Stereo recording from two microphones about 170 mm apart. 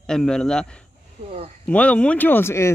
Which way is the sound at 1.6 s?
5° left (ahead or behind).